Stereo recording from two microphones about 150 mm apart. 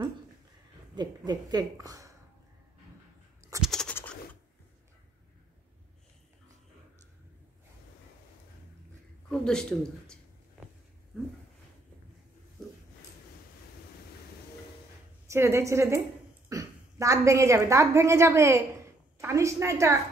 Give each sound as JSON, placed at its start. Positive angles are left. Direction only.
{"t": 0.9, "sound": "a woman's voice", "side_deg": -30}
{"t": 3.6, "sound": "scratch", "side_deg": 5}
{"t": 3.9, "sound": "a sound", "side_deg": 10}
{"t": 9.3, "sound": "speech", "side_deg": 5}
{"t": 11.1, "sound": "a sound", "side_deg": 0}
{"t": 15.2, "sound": "a woman's voice", "side_deg": -15}